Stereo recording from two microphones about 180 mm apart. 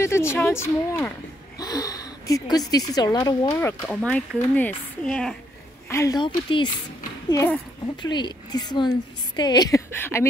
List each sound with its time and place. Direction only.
0.0 s speech: 15° left (ahead or behind)
1.6 s a sound: 20° left (ahead or behind)
2.7 s speech: 20° left (ahead or behind); by 5.3 s 5° left (ahead or behind)
5.9 s speech: 15° left (ahead or behind)
7.2 s speech: 15° left (ahead or behind)
8.0 s a woman's voice: 25° left (ahead or behind)